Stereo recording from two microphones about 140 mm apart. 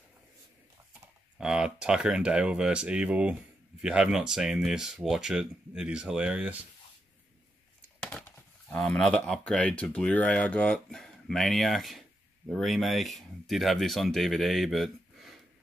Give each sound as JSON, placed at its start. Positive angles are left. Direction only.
{"t": 1.4, "sound": "speech", "side_deg": -5}
{"t": 8.0, "sound": "speech", "side_deg": 5}